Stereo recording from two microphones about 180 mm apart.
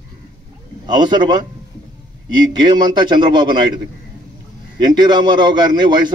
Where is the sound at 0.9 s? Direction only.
25° right (ahead or behind).